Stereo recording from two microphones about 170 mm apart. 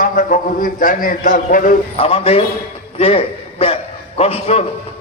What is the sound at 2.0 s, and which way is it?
A man's voice, 35° left (ahead or behind).